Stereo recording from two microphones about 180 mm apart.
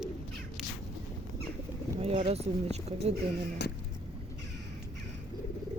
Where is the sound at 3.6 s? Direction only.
70° left (ahead or behind).